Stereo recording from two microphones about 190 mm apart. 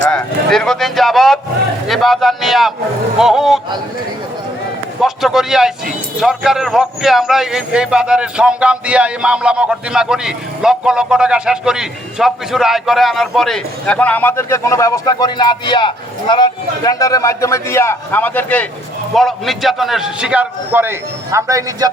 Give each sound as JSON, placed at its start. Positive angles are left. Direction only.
{"t": 0.1, "sound": "a man's voice", "side_deg": 5}
{"t": 4.9, "sound": "a man's voice", "side_deg": 0}